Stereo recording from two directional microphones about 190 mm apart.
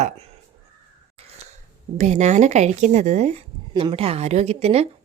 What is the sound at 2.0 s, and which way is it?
A woman's voice, 35° right (ahead or behind).